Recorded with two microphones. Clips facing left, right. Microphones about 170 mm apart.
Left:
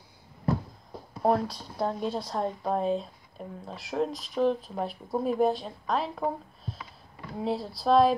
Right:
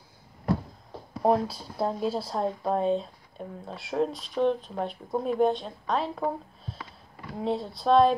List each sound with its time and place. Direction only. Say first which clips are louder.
1.2 s speech: right 2 dB; 5° right (ahead or behind)